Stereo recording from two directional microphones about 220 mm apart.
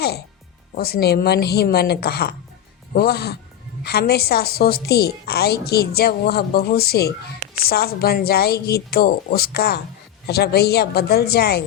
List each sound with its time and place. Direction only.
0.8 s a woman's voice: 45° left (ahead or behind)